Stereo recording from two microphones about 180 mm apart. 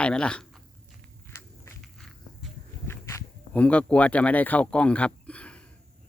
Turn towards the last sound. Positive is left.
turn(degrees=5)  # may be behind; listen again after turning